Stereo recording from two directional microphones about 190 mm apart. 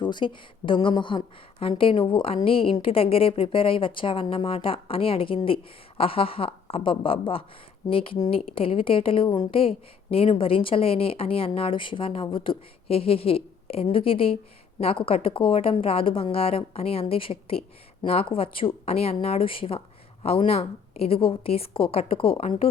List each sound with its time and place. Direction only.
0.0 s a woman's voice: 25° left (ahead or behind)